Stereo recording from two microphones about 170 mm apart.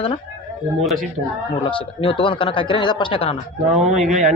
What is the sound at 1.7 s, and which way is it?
Speech, 30° left (ahead or behind).